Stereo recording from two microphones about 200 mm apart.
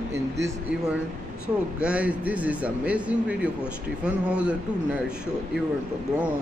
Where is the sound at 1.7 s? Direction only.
5° right (ahead or behind).